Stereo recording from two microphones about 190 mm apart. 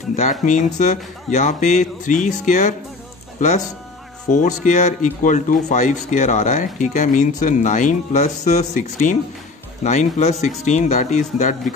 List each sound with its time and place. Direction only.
0.1 s speech: 40° left (ahead or behind)